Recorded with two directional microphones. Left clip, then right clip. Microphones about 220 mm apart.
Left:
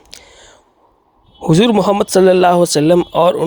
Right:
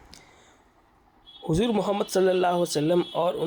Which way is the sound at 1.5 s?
40° left (ahead or behind).